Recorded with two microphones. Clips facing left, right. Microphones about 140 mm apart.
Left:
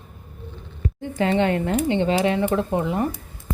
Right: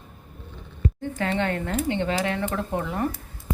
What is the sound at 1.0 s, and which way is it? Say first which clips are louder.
Speech: left 6 dB; 20° left (ahead or behind).